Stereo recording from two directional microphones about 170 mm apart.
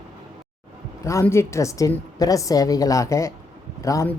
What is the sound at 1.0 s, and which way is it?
A woman's voice, 15° left (ahead or behind).